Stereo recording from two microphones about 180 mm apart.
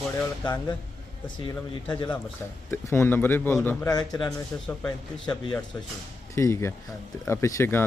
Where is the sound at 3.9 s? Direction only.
20° left (ahead or behind).